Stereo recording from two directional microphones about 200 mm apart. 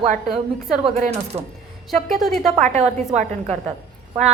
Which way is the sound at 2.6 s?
35° right (ahead or behind).